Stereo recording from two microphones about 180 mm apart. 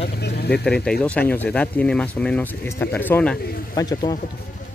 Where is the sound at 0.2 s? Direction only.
65° left (ahead or behind).